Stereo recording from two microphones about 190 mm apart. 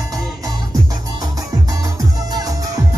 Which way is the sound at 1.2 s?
15° right (ahead or behind).